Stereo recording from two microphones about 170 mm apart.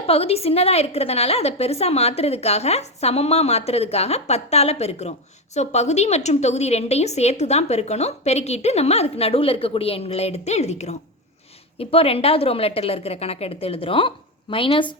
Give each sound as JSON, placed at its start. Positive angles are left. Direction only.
{"t": 0.0, "sound": "a woman's voice", "side_deg": 35}